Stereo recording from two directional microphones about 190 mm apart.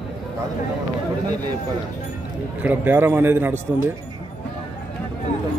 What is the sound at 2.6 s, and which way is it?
A man's voice, 10° right (ahead or behind).